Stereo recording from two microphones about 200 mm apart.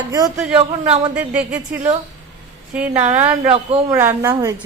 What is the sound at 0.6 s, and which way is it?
Speech, 30° right (ahead or behind).